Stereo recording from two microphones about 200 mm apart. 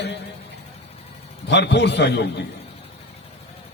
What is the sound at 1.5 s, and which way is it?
Speech, 60° left (ahead or behind).